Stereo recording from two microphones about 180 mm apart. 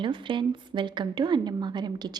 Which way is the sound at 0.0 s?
25° right (ahead or behind).